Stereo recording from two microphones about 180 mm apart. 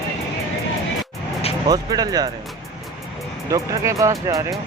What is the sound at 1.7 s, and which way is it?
Speech, 20° right (ahead or behind).